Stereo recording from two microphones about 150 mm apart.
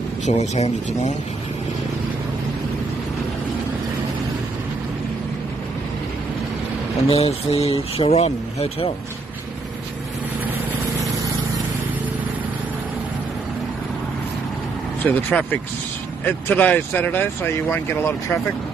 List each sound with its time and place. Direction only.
0.2 s speech: 50° left (ahead or behind)
7.1 s speech: 40° left (ahead or behind)
15.0 s speech: 10° left (ahead or behind)